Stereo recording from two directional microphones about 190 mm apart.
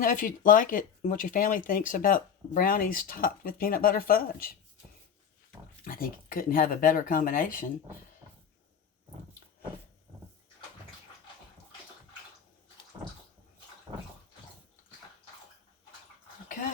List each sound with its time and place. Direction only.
0.0 s speech: 45° left (ahead or behind)
5.8 s speech: 45° left (ahead or behind)
13.9 s bathtub: 20° right (ahead or behind)